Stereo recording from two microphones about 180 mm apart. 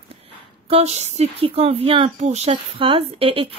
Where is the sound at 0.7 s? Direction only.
35° right (ahead or behind).